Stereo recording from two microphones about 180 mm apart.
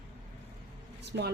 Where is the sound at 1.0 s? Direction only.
70° right (ahead or behind).